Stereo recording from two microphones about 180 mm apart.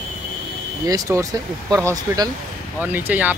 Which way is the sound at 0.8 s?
20° right (ahead or behind).